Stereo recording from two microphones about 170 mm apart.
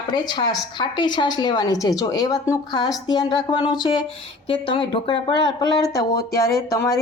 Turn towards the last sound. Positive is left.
turn(degrees=15)  # may be behind; listen again after turning